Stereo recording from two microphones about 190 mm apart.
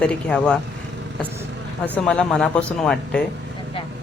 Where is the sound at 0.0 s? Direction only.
5° left (ahead or behind).